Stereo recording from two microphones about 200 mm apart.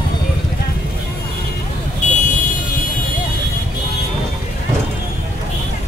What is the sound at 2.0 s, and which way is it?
Car alarm, 40° left (ahead or behind).